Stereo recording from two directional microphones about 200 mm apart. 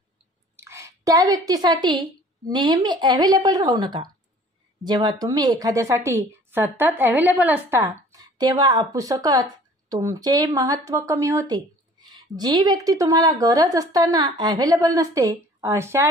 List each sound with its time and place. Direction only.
0.6 s a woman's voice: 15° right (ahead or behind)